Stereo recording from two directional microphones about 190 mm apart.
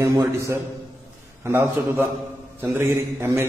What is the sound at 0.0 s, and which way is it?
A man's voice, 15° right (ahead or behind).